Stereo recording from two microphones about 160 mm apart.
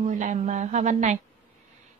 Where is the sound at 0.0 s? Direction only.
50° right (ahead or behind).